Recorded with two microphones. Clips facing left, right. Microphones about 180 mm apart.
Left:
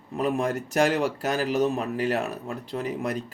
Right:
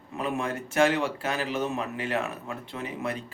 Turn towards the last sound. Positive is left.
turn(degrees=40)  # may be behind; listen again after turning